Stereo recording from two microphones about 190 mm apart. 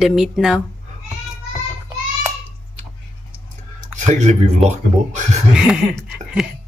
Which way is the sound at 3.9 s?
40° right (ahead or behind).